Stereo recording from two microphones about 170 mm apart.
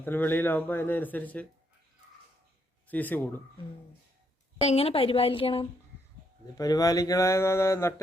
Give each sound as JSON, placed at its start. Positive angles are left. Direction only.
{"t": 0.0, "sound": "speech", "side_deg": 10}
{"t": 2.8, "sound": "speech", "side_deg": 10}
{"t": 4.6, "sound": "a woman's voice", "side_deg": 35}
{"t": 6.6, "sound": "speech", "side_deg": 20}